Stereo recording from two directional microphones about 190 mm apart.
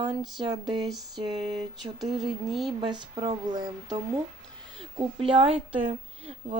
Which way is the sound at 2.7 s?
25° right (ahead or behind).